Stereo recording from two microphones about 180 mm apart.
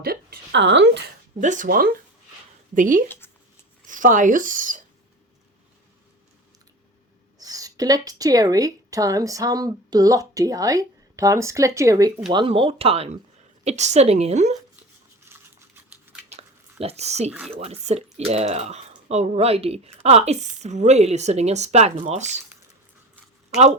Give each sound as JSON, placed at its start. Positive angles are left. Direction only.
{"t": 0.0, "sound": "a woman's voice", "side_deg": -55}
{"t": 1.4, "sound": "speech", "side_deg": -45}
{"t": 3.1, "sound": "a sound", "side_deg": 10}
{"t": 3.8, "sound": "speech", "side_deg": -45}
{"t": 7.3, "sound": "a woman's voice", "side_deg": -20}
{"t": 15.2, "sound": "a sound", "side_deg": -15}
{"t": 16.8, "sound": "speech", "side_deg": -35}